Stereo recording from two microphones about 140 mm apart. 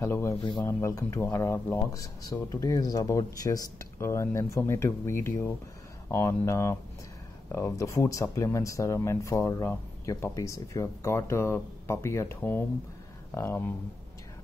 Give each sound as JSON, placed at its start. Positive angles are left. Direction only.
{"t": 0.0, "sound": "speech", "side_deg": 20}
{"t": 0.4, "sound": "speech", "side_deg": 35}
{"t": 0.7, "sound": "speech", "side_deg": 20}